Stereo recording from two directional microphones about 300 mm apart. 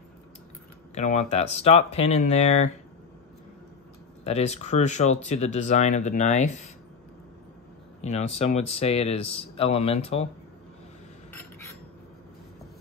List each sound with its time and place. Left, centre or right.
0.9 s speech: left
4.2 s speech: left
8.0 s speech: left